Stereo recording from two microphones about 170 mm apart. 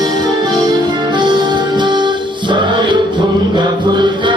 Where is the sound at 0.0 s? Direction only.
25° right (ahead or behind).